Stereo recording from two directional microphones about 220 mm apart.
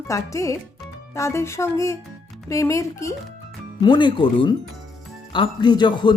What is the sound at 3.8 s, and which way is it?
Speech, 20° left (ahead or behind).